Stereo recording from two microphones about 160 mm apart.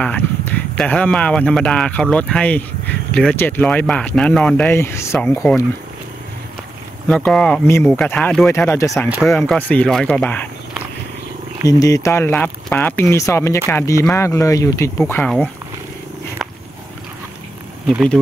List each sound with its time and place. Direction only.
0.0 s speech: 10° left (ahead or behind)
7.1 s speech: 5° left (ahead or behind); by 9.1 s 20° left (ahead or behind)
9.5 s speech: 10° left (ahead or behind)
11.6 s speech: 20° left (ahead or behind); by 15.5 s 5° left (ahead or behind)